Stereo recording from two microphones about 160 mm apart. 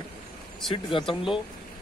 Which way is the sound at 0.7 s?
30° left (ahead or behind).